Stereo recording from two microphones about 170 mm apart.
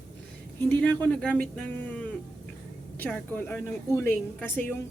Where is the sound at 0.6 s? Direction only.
10° left (ahead or behind).